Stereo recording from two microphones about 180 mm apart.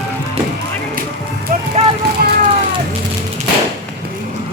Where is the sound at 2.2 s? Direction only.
60° right (ahead or behind).